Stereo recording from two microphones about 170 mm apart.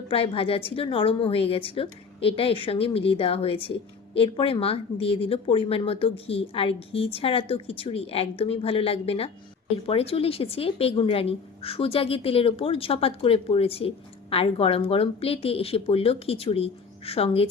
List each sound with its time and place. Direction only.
0.1 s a woman's voice: 35° left (ahead or behind)